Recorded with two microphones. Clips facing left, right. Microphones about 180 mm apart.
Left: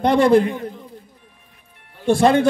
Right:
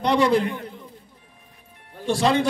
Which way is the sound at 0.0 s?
50° left (ahead or behind).